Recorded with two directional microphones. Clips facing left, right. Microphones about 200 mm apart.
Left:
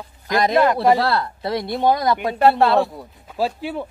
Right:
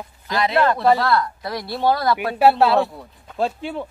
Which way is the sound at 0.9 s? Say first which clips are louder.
Even; 30° left (ahead or behind).